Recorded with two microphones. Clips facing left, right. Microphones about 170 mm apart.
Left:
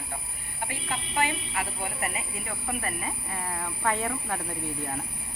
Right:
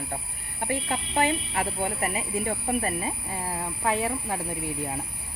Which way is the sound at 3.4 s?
15° right (ahead or behind).